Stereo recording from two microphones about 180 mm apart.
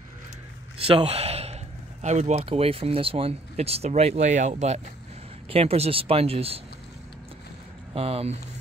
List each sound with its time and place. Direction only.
0.7 s speech: 30° right (ahead or behind)
7.9 s speech: 35° right (ahead or behind)